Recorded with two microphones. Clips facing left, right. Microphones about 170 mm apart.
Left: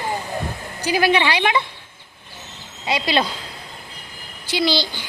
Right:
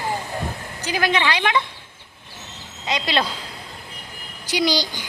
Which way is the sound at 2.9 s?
5° left (ahead or behind).